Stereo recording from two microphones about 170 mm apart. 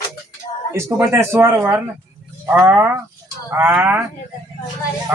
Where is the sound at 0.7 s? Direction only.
15° right (ahead or behind).